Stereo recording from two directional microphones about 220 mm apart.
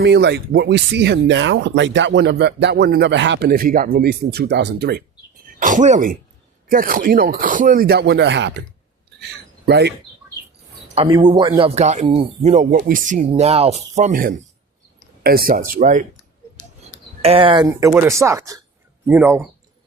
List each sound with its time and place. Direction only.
0.0 s speech: 50° right (ahead or behind)
5.5 s speech: 35° right (ahead or behind); by 8.6 s 50° right (ahead or behind)
9.6 s speech: 50° right (ahead or behind)
10.9 s speech: 25° right (ahead or behind)
17.2 s speech: 25° right (ahead or behind)